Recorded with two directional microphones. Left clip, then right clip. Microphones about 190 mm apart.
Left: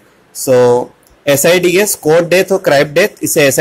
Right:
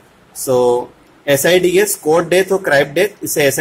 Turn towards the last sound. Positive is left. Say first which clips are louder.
# left 4 dB
turn(degrees=20)  # may be behind; listen again after turning